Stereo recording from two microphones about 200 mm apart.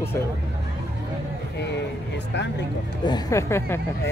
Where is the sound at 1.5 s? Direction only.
60° left (ahead or behind).